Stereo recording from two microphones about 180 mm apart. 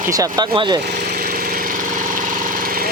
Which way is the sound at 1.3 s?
55° right (ahead or behind).